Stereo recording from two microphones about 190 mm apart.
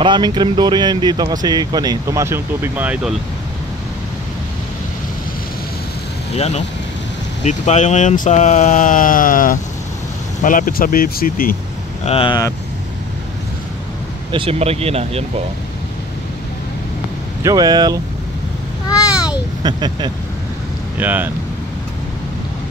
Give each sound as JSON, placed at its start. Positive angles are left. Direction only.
{"t": 0.0, "sound": "speech", "side_deg": -25}
{"t": 6.3, "sound": "speech", "side_deg": 35}
{"t": 12.0, "sound": "speech", "side_deg": 30}
{"t": 14.3, "sound": "speech", "side_deg": -30}
{"t": 17.4, "sound": "speech", "side_deg": -20}
{"t": 19.6, "sound": "speech", "side_deg": -20}
{"t": 21.0, "sound": "speech", "side_deg": -10}